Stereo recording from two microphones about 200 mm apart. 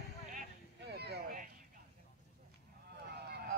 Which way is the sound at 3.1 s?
55° right (ahead or behind).